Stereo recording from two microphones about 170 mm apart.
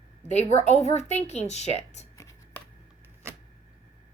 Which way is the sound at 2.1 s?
20° left (ahead or behind).